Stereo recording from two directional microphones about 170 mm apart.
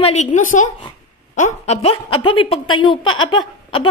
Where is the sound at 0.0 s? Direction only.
40° left (ahead or behind).